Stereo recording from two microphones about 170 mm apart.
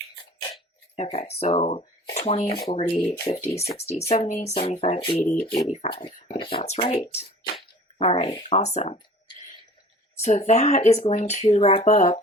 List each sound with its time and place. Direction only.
0.9 s speech: 40° left (ahead or behind)
10.2 s speech: 40° left (ahead or behind)